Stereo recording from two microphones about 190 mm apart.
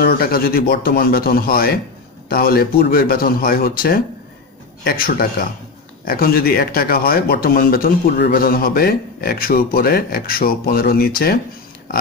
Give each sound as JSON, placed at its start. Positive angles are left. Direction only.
{"t": 0.0, "sound": "speech", "side_deg": 50}